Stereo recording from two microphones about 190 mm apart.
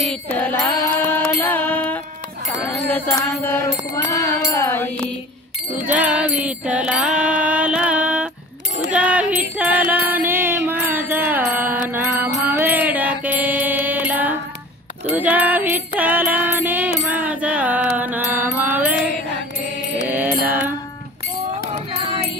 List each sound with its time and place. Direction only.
0.0 s music: 5° left (ahead or behind)
5.9 s music: 5° right (ahead or behind)
12.4 s mantra: 10° right (ahead or behind)
15.0 s music: 10° right (ahead or behind)
17.1 s mantra: 10° right (ahead or behind)
20.1 s mantra: 10° right (ahead or behind)
20.4 s music: 10° right (ahead or behind)
21.6 s music: 30° right (ahead or behind)